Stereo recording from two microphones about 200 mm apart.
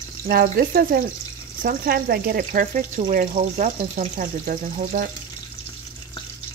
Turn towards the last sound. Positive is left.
turn(degrees=-40)  # may be behind; listen again after turning